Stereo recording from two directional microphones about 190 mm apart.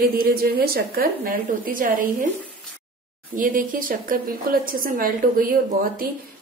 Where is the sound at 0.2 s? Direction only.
50° right (ahead or behind).